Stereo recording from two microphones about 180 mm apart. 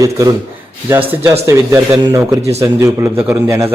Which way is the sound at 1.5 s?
15° right (ahead or behind).